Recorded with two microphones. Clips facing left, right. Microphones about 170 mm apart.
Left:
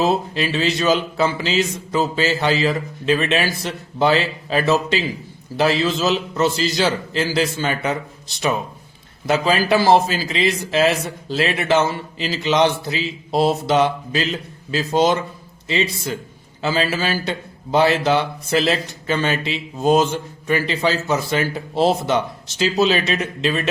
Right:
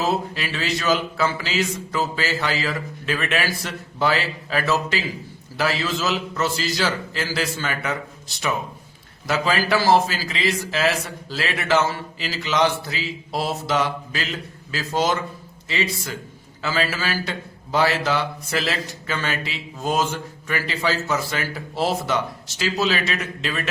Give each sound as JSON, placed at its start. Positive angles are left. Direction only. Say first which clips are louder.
{"t": 0.0, "sound": "a man's voice", "louder": "left 5 dB", "side_deg": 20}
{"t": 9.2, "sound": "a man's voice", "louder": "left 4 dB", "side_deg": 20}